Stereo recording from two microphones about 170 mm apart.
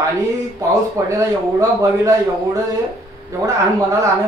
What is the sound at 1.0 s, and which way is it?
A man's voice, 20° right (ahead or behind).